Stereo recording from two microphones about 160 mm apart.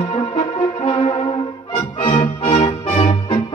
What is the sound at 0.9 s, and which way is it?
Music, 35° left (ahead or behind).